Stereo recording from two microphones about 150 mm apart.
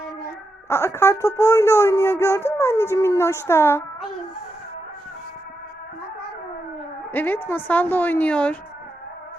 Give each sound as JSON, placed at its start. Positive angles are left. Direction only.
{"t": 0.7, "sound": "speech", "side_deg": 15}
{"t": 7.1, "sound": "speech", "side_deg": 10}